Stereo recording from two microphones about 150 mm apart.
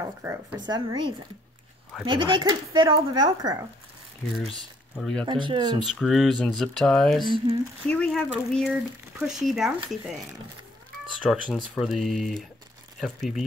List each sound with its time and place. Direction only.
0.0 s speech: 15° right (ahead or behind)
0.7 s speech: 30° right (ahead or behind)
4.9 s speech: 5° left (ahead or behind)
5.2 s speech: 35° right (ahead or behind)
5.9 s speech: centre (ahead or behind)
7.2 s speech: 35° right (ahead or behind)
7.9 s speech: 5° left (ahead or behind)
11.2 s speech: centre (ahead or behind)